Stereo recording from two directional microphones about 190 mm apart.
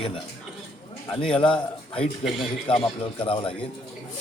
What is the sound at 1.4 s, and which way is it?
A man's voice, 30° left (ahead or behind).